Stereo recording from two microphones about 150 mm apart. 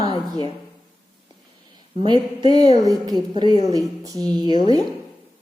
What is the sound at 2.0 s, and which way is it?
Speech, 30° right (ahead or behind).